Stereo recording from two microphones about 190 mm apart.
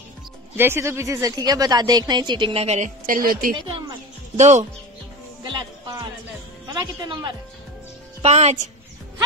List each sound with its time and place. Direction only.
0.6 s a woman's voice: 10° right (ahead or behind); by 3.5 s 50° right (ahead or behind)
3.5 s a woman's voice: 30° right (ahead or behind)
5.4 s music: 25° right (ahead or behind)
6.7 s a woman's voice: 20° right (ahead or behind)
8.2 s a woman's voice: 35° right (ahead or behind)